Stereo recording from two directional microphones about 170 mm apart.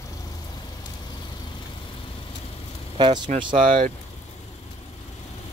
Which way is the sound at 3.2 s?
50° right (ahead or behind).